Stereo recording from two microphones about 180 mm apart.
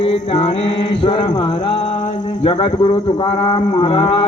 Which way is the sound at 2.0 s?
30° left (ahead or behind).